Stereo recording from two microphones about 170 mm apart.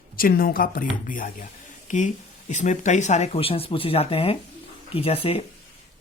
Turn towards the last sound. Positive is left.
turn(degrees=35)  # may be behind; listen again after turning